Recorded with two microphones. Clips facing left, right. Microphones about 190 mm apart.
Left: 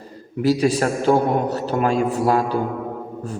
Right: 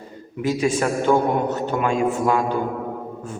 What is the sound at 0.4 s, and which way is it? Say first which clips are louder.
A man's voice: left 3 dB; 35° left (ahead or behind).